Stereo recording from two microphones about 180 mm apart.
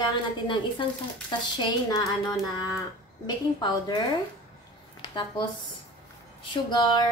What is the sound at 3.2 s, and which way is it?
Speech, 25° left (ahead or behind).